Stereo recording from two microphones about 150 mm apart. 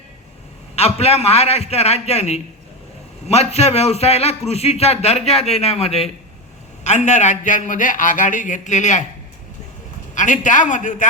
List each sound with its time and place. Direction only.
0.8 s a man's voice: 45° left (ahead or behind)
10.2 s a man's voice: 55° left (ahead or behind)